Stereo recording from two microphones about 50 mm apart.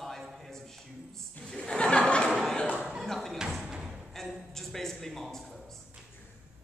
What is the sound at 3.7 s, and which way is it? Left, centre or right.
Thump, centre.